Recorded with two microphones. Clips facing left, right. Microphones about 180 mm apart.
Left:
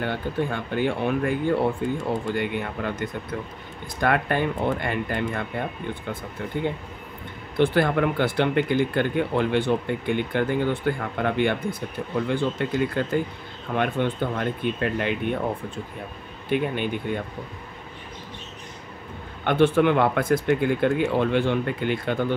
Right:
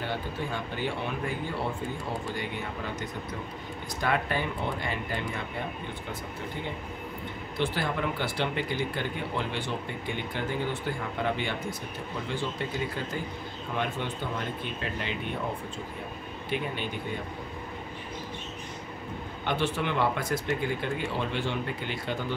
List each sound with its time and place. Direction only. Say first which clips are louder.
0.0 s speech: left 7 dB; 55° left (ahead or behind)
6.5 s speech: left 8 dB; 55° left (ahead or behind)
16.4 s speech: left 8 dB; 55° left (ahead or behind)
19.4 s speech: left 11 dB; 55° left (ahead or behind)